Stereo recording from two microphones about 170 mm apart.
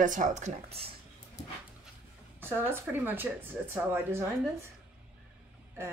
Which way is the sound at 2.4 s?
10° right (ahead or behind).